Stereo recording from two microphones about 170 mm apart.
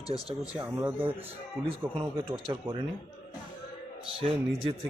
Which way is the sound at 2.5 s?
30° right (ahead or behind).